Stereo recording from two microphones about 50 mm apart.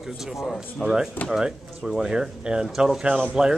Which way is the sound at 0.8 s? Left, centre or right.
Centre.